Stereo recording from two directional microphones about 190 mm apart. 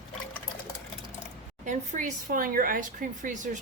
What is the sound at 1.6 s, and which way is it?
A woman's voice, 40° right (ahead or behind).